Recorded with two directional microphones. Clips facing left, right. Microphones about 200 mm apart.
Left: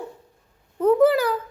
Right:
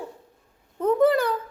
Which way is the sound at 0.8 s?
5° left (ahead or behind).